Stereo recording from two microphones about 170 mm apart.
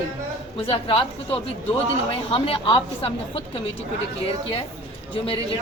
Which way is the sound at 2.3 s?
30° left (ahead or behind).